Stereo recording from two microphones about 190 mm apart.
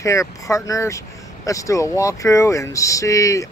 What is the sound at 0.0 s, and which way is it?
Speech, 15° left (ahead or behind).